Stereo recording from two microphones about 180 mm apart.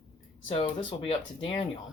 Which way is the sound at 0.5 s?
30° left (ahead or behind).